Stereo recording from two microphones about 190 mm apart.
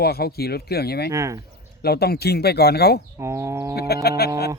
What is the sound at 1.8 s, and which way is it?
A man's voice, 55° left (ahead or behind).